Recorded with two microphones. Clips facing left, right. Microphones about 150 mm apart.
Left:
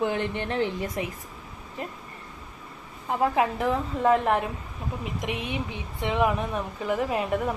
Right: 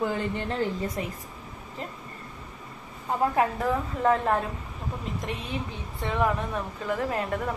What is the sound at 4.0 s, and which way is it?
Speech, 15° left (ahead or behind).